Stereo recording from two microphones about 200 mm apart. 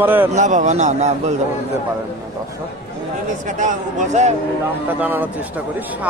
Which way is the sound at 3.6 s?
35° right (ahead or behind).